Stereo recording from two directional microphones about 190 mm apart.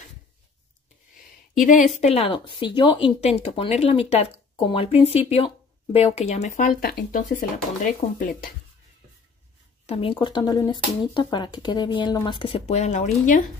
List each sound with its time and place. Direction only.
1.6 s a woman's voice: 45° left (ahead or behind)
9.8 s speech: 30° left (ahead or behind)